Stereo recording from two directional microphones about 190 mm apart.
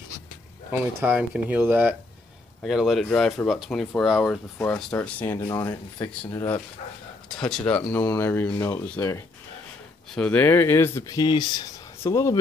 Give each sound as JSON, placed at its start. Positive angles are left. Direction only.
{"t": 1.0, "sound": "speech", "side_deg": -5}
{"t": 5.4, "sound": "speech", "side_deg": 20}
{"t": 7.4, "sound": "speech", "side_deg": 5}